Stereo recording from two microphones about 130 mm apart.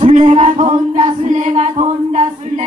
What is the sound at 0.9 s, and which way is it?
Music, 65° right (ahead or behind).